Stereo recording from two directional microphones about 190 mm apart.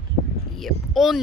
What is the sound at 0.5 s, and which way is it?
Speech, centre (ahead or behind).